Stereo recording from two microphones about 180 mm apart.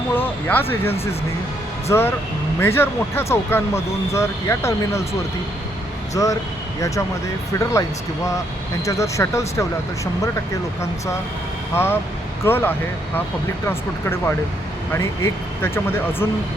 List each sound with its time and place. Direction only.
0.1 s a sound: 10° left (ahead or behind)
1.9 s speech: 15° left (ahead or behind)
6.2 s speech: 20° left (ahead or behind)
7.6 s speech: 20° left (ahead or behind)
11.7 s speech: 15° left (ahead or behind)